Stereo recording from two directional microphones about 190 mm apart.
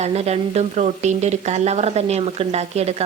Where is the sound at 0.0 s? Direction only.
35° right (ahead or behind).